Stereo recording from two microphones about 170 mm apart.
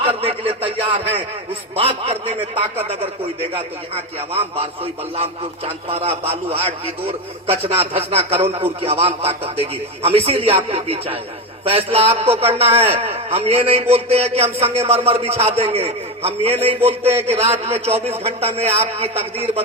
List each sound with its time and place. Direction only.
0.0 s a man's voice: 35° right (ahead or behind)
4.4 s a man's voice: 35° right (ahead or behind)